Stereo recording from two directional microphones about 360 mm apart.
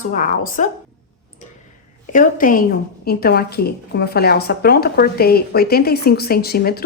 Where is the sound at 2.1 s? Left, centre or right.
Left.